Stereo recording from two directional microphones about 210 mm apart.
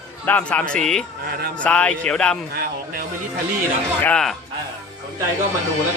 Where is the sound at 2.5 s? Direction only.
45° right (ahead or behind).